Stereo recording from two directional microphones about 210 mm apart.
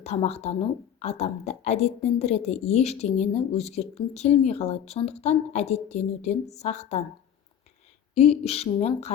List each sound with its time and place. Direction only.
0.0 s a woman's voice: 30° left (ahead or behind)
8.1 s a woman's voice: 30° left (ahead or behind)